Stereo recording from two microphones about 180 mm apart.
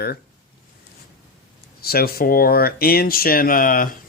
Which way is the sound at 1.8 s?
60° left (ahead or behind).